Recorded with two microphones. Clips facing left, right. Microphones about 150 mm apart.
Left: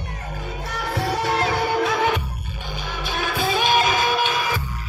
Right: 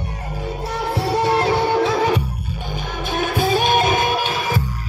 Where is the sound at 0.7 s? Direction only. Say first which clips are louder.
Right 3 dB; 30° right (ahead or behind).